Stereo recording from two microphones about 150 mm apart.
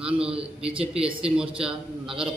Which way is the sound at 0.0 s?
5° right (ahead or behind).